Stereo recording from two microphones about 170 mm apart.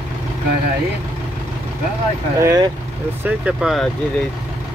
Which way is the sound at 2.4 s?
15° right (ahead or behind).